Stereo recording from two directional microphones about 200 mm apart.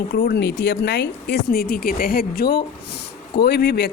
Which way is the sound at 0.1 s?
55° left (ahead or behind).